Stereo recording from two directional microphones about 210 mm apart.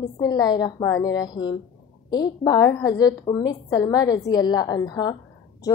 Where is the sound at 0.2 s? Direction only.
20° left (ahead or behind).